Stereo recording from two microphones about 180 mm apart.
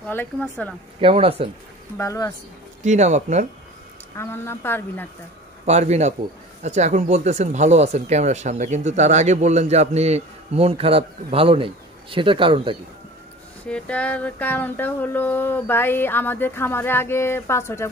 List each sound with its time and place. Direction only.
0.1 s speech: 10° left (ahead or behind)
1.0 s speech: 30° right (ahead or behind)
2.0 s speech: 20° left (ahead or behind)
2.8 s speech: 40° right (ahead or behind)
4.2 s speech: 15° left (ahead or behind)
5.7 s speech: 40° right (ahead or behind)
13.7 s speech: 5° left (ahead or behind)